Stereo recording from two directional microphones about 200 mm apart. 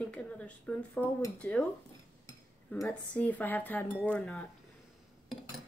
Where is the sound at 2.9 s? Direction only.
10° left (ahead or behind).